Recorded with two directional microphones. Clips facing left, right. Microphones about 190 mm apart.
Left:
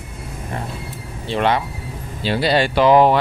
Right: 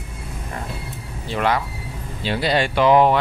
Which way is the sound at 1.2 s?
25° left (ahead or behind).